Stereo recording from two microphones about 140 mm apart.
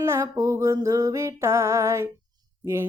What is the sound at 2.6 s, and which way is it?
Speech, 15° right (ahead or behind).